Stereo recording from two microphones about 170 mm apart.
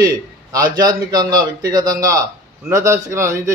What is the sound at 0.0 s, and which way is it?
A man's voice, 20° right (ahead or behind).